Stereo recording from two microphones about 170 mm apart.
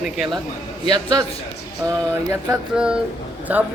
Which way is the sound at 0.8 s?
25° right (ahead or behind).